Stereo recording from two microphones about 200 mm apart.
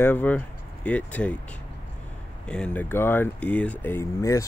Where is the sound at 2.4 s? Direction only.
5° left (ahead or behind).